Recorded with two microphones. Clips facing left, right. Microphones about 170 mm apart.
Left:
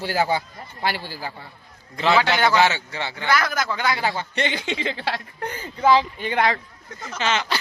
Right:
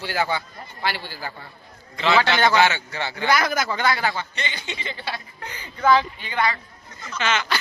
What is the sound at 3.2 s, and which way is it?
Speech, 15° right (ahead or behind).